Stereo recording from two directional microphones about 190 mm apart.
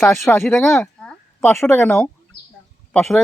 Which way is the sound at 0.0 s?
Centre (ahead or behind).